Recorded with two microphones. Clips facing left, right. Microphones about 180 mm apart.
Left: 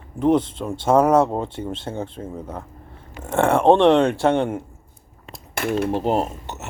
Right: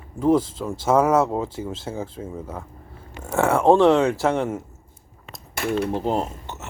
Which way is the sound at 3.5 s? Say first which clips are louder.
Left 1 dB; 25° left (ahead or behind).